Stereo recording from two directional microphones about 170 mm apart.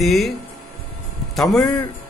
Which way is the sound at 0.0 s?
Centre (ahead or behind).